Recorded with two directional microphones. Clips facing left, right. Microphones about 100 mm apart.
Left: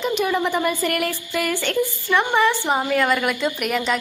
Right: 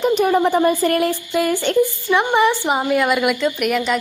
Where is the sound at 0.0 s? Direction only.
40° right (ahead or behind); by 3.3 s 10° right (ahead or behind).